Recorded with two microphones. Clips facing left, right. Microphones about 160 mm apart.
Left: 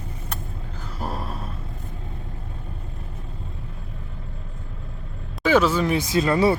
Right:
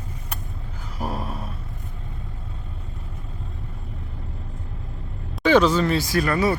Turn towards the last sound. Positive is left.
turn(degrees=25)  # may be behind; listen again after turning